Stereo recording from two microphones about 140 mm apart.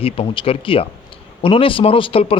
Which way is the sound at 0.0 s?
40° left (ahead or behind).